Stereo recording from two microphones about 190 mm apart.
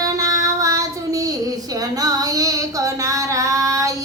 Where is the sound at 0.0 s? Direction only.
15° right (ahead or behind).